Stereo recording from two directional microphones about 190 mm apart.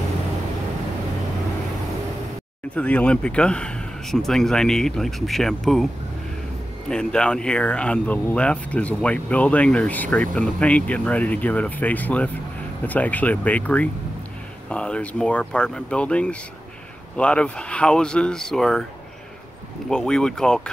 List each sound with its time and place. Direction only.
2.7 s speech: 5° left (ahead or behind)
6.9 s speech: 5° left (ahead or behind)
19.9 s speech: 5° left (ahead or behind)